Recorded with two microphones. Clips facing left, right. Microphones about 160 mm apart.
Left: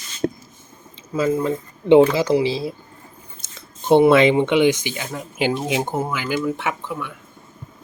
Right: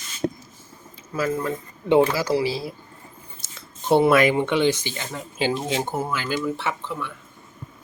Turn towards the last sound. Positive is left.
turn(degrees=15)  # may be behind; listen again after turning